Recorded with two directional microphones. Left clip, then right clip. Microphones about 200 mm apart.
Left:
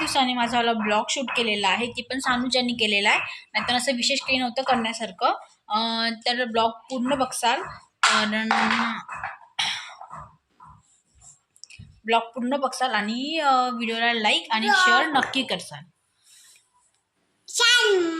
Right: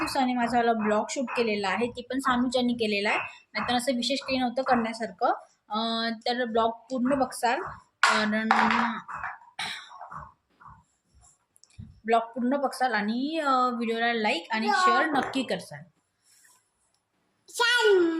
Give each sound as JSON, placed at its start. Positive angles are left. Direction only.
{"t": 0.0, "sound": "a woman's voice", "side_deg": -5}
{"t": 9.6, "sound": "beatboxing", "side_deg": 0}
{"t": 11.6, "sound": "clicking", "side_deg": -5}
{"t": 12.0, "sound": "a woman's voice", "side_deg": -5}
{"t": 17.4, "sound": "a woman's voice", "side_deg": -15}